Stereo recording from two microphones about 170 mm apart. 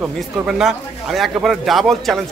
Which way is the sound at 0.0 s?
5° right (ahead or behind).